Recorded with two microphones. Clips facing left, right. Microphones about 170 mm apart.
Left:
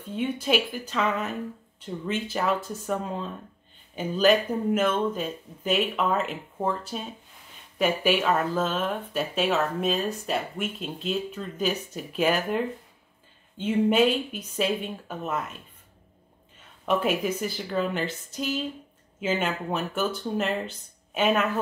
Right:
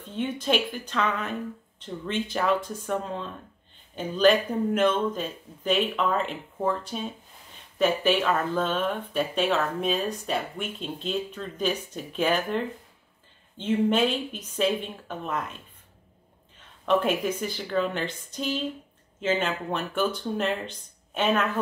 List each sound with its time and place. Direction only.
0.0 s speech: 10° left (ahead or behind)
16.8 s speech: 5° left (ahead or behind)